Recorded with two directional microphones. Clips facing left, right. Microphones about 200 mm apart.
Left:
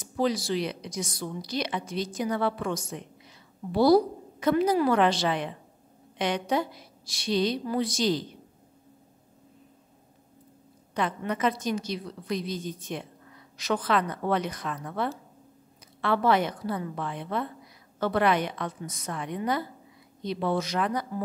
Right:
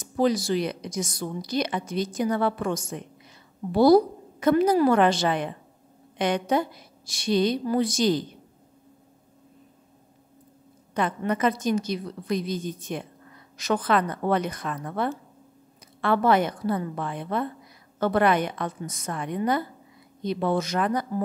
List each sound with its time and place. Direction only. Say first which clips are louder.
0.0 s a woman's voice: right 4 dB; 45° right (ahead or behind)
11.0 s a woman's voice: right 3 dB; 50° right (ahead or behind)